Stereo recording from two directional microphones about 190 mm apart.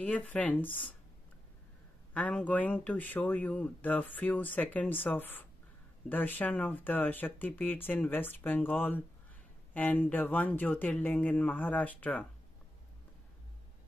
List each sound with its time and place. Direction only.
0.0 s speech: 10° left (ahead or behind)
2.1 s speech: 5° left (ahead or behind)